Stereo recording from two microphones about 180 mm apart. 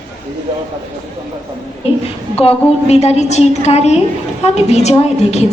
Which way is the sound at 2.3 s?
35° left (ahead or behind).